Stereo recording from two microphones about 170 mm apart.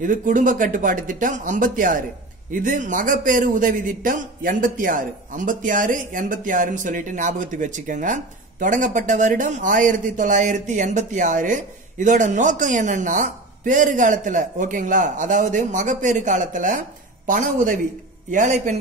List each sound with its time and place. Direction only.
0.0 s speech: 50° right (ahead or behind)